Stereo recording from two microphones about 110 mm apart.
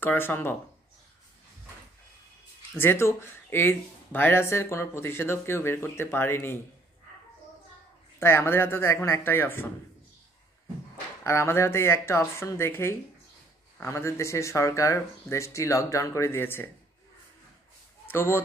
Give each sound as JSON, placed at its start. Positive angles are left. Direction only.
{"t": 0.0, "sound": "speech", "side_deg": 15}
{"t": 2.8, "sound": "speech", "side_deg": 20}
{"t": 8.2, "sound": "speech", "side_deg": 20}
{"t": 11.2, "sound": "speech", "side_deg": 25}
{"t": 18.0, "sound": "speech", "side_deg": 20}